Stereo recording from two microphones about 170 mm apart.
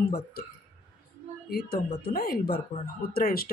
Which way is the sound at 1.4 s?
65° left (ahead or behind).